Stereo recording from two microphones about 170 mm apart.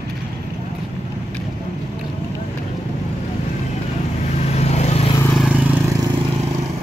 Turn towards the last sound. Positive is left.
turn(degrees=-5)  # may be behind; listen again after turning